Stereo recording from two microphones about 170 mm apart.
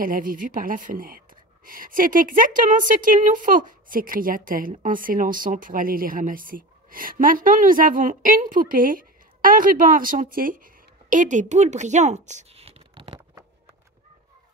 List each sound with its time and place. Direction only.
0.0 s speech: 55° right (ahead or behind); by 13.2 s 30° right (ahead or behind)